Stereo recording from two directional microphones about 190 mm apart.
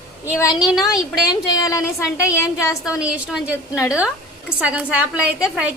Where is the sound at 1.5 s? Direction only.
15° left (ahead or behind).